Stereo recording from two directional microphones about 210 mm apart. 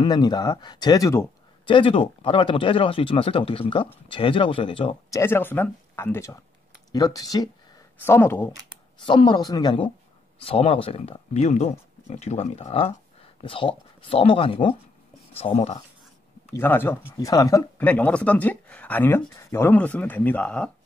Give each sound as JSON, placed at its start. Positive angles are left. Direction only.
{"t": 0.0, "sound": "speech", "side_deg": 20}
{"t": 5.2, "sound": "speech", "side_deg": 10}
{"t": 9.0, "sound": "speech", "side_deg": 20}
{"t": 16.5, "sound": "speech", "side_deg": 10}